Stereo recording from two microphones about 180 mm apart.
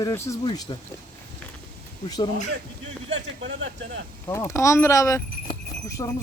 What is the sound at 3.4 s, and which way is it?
Speech, 90° right.